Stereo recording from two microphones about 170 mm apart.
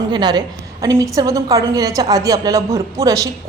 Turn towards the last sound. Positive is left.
turn(degrees=-20)  # may be behind; listen again after turning